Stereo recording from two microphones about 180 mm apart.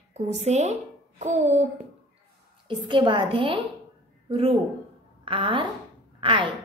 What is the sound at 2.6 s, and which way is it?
A woman's voice, 25° right (ahead or behind).